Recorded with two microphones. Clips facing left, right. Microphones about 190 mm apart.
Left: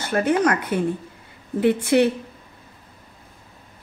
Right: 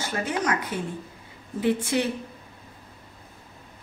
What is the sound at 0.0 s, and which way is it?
A woman's voice, 60° left (ahead or behind).